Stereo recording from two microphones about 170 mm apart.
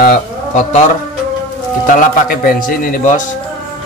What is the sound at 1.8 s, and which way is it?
A man's voice, 55° left (ahead or behind).